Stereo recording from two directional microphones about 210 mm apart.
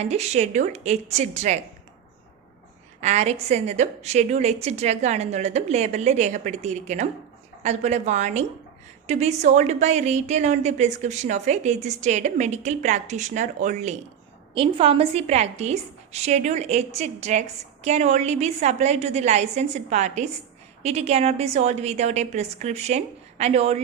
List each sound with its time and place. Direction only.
0.0 s a woman's voice: 30° right (ahead or behind)
3.0 s a woman's voice: 35° right (ahead or behind)